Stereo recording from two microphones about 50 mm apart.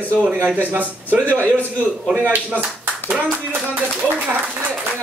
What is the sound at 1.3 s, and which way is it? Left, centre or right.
Speech, right.